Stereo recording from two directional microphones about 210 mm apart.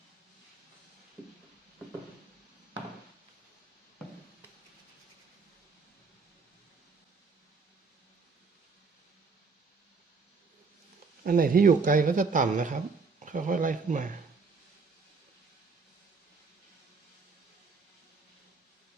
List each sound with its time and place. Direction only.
11.2 s speech: 45° right (ahead or behind)